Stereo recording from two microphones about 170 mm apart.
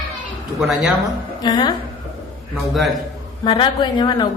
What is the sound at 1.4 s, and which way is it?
Speech, 25° left (ahead or behind).